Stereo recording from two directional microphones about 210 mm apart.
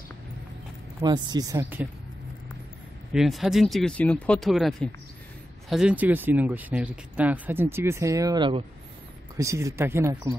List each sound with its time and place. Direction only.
1.0 s speech: 20° right (ahead or behind)
3.1 s speech: centre (ahead or behind)